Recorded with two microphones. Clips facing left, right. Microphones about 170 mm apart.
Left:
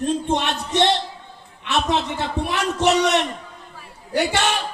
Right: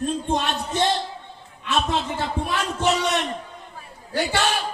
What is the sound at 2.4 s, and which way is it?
Speech, 75° left (ahead or behind).